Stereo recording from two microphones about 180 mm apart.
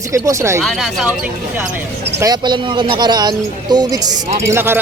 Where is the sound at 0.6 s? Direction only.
Centre (ahead or behind).